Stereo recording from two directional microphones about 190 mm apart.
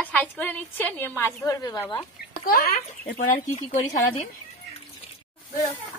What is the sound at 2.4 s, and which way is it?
Speech, 50° left (ahead or behind).